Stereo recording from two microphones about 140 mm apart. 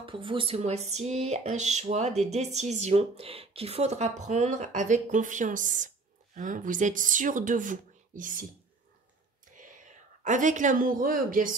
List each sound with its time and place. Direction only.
0.0 s speech: 40° right (ahead or behind)
0.6 s speech: 50° right (ahead or behind); by 8.5 s 70° right (ahead or behind)
9.6 s speech: 65° right (ahead or behind); by 11.5 s 80° right